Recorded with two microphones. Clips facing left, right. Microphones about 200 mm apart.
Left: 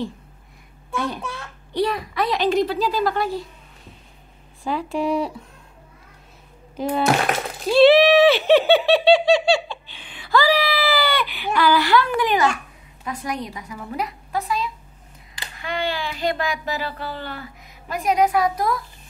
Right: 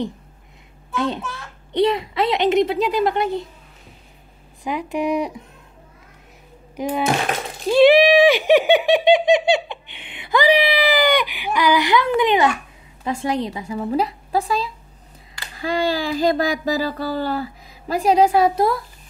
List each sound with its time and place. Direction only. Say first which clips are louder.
0.9 s a woman's voice: right 3 dB; 25° right (ahead or behind)
4.6 s speech: right 1 dB; 15° right (ahead or behind)
6.8 s speech: even; 15° right (ahead or behind)
7.7 s a sound: right 1 dB; 15° right (ahead or behind)
13.0 s a woman's voice: right 6 dB; 25° right (ahead or behind)